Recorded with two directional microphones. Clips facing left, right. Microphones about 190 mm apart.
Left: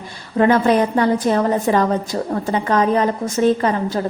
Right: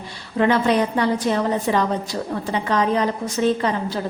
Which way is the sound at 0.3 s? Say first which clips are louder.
Left 3 dB; 45° left (ahead or behind).